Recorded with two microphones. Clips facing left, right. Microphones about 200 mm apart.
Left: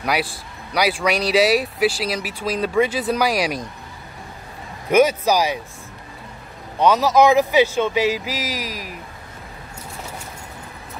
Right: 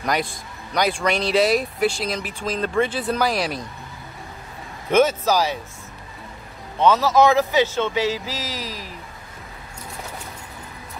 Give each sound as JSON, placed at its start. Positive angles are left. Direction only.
{"t": 0.0, "sound": "speech", "side_deg": 10}
{"t": 4.9, "sound": "speech", "side_deg": 15}
{"t": 6.8, "sound": "speech", "side_deg": 15}